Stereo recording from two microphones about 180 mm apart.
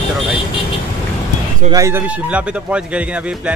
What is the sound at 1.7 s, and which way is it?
Speech, 15° right (ahead or behind).